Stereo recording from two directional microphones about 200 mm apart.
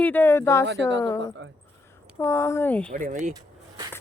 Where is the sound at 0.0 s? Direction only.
10° left (ahead or behind).